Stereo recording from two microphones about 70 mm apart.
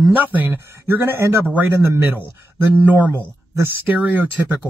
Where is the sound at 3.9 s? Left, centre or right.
Right.